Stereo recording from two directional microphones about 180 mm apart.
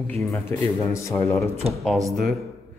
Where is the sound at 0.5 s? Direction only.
10° left (ahead or behind).